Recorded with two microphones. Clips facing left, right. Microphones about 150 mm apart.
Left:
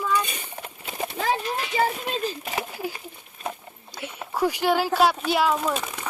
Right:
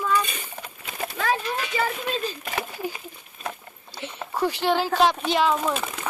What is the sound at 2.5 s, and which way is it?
Speech, 10° left (ahead or behind).